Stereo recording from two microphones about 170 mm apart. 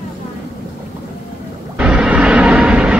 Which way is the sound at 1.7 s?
5° right (ahead or behind).